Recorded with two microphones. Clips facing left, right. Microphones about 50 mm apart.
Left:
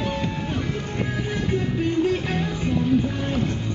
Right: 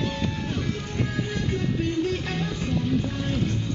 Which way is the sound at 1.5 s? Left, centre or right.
Centre.